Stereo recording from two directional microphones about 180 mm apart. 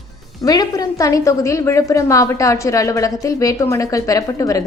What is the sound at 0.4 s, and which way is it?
A woman's voice, 20° left (ahead or behind).